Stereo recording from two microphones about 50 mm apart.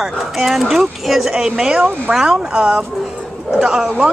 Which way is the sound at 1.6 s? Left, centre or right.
Centre.